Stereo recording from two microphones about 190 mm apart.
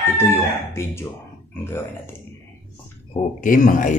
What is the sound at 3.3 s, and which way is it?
Speech, 45° left (ahead or behind).